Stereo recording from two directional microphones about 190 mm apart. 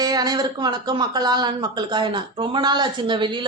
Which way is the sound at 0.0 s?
20° right (ahead or behind).